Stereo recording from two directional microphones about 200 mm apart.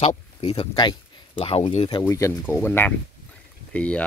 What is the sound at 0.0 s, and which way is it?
Speech, 30° left (ahead or behind).